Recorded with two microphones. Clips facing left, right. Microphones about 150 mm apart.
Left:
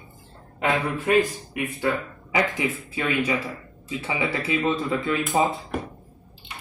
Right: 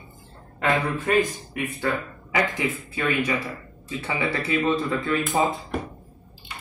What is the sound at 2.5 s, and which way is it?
Speech, 20° left (ahead or behind).